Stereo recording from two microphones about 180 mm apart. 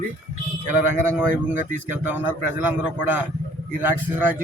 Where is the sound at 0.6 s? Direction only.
10° right (ahead or behind).